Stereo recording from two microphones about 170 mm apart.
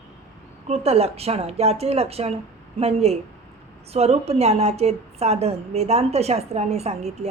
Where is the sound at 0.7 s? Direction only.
35° right (ahead or behind).